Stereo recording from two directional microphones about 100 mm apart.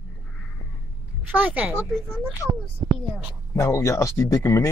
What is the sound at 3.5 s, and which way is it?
Speech, 30° left (ahead or behind).